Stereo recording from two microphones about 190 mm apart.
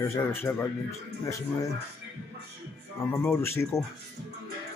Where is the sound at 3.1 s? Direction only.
15° left (ahead or behind).